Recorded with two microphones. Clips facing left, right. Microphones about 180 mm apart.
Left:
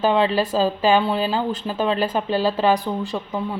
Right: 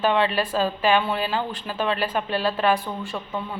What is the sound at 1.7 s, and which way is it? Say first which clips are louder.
Speech: left 3 dB; 20° left (ahead or behind).